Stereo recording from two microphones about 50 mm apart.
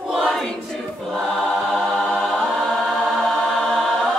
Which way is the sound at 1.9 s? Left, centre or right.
Centre.